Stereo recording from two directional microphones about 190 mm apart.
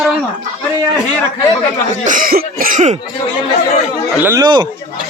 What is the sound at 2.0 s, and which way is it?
Cough, 45° right (ahead or behind).